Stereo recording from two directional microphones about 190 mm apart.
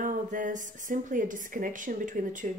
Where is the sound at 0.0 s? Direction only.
45° right (ahead or behind).